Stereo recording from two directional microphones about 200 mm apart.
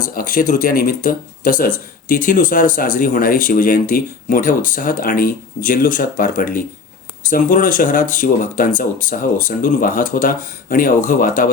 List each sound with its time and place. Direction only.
0.1 s speech: 45° left (ahead or behind)